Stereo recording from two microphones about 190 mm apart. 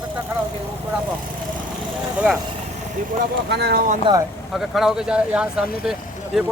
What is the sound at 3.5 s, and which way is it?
Speech, 60° right (ahead or behind).